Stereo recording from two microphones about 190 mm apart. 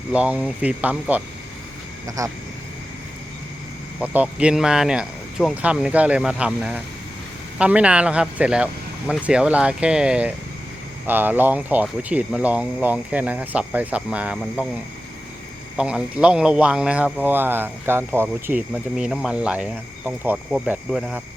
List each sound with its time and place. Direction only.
0.1 s speech: 5° right (ahead or behind)
4.0 s speech: 10° right (ahead or behind)
15.8 s speech: 5° right (ahead or behind)